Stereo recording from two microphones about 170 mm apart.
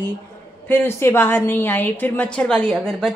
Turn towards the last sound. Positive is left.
turn(degrees=5)  # may be behind; listen again after turning